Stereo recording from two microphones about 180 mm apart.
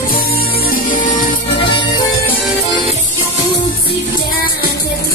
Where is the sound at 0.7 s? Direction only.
50° left (ahead or behind).